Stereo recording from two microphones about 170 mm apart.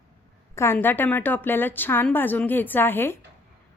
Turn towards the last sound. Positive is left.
turn(degrees=10)  # may be behind; listen again after turning